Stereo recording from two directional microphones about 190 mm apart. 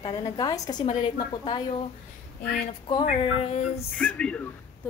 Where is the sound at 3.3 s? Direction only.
30° left (ahead or behind).